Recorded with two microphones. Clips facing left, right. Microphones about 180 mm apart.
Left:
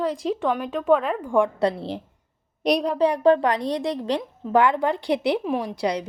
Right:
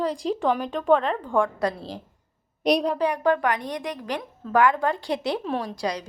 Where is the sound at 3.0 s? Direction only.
30° left (ahead or behind).